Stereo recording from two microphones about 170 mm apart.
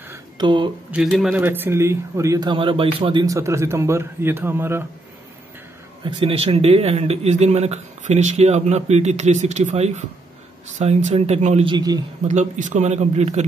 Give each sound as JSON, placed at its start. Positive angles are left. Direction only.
{"t": 0.4, "sound": "speech", "side_deg": -30}
{"t": 1.1, "sound": "speech", "side_deg": -5}
{"t": 3.3, "sound": "speech", "side_deg": -15}
{"t": 6.0, "sound": "a man's voice", "side_deg": -30}
{"t": 11.7, "sound": "speech", "side_deg": -20}
{"t": 12.3, "sound": "a man's voice", "side_deg": -45}